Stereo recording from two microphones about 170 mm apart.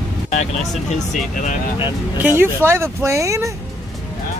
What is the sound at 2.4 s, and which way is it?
Speech, 15° right (ahead or behind).